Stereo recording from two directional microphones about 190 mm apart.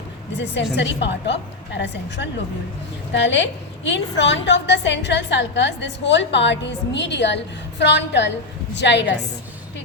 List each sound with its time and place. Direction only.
0.8 s a woman's voice: 65° left (ahead or behind)